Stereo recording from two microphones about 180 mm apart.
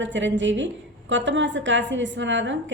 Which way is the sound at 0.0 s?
90° right.